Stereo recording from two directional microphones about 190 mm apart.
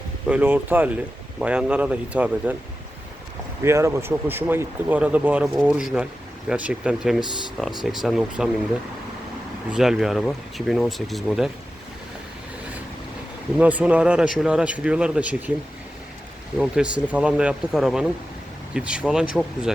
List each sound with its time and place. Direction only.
0.3 s speech: 10° right (ahead or behind)
3.6 s speech: 15° right (ahead or behind)
7.2 s speech: 25° left (ahead or behind)
7.9 s speech: centre (ahead or behind)
9.7 s speech: 5° right (ahead or behind)
13.6 s speech: 10° right (ahead or behind)
16.6 s speech: 5° right (ahead or behind)